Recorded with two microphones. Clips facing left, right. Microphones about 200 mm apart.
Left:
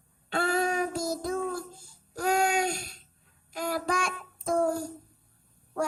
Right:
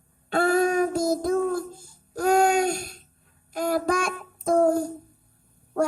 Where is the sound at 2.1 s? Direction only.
45° right (ahead or behind).